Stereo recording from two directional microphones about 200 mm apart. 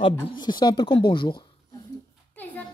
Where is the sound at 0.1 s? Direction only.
20° left (ahead or behind).